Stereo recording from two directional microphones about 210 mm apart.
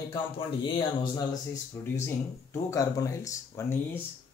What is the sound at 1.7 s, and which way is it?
Speech, 15° left (ahead or behind).